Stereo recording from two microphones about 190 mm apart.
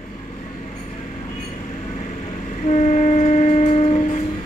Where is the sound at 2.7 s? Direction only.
40° left (ahead or behind).